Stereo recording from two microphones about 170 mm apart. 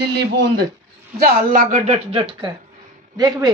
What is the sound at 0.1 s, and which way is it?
Speech, 75° right (ahead or behind).